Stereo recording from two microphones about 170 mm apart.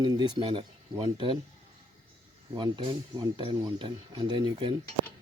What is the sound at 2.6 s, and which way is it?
Speech, 25° right (ahead or behind).